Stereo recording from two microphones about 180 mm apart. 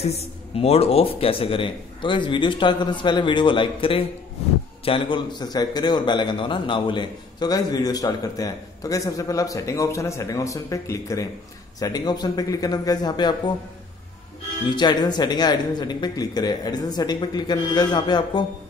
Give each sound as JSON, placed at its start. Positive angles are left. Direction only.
{"t": 0.0, "sound": "a man's voice", "side_deg": 35}
{"t": 14.8, "sound": "a man's voice", "side_deg": 25}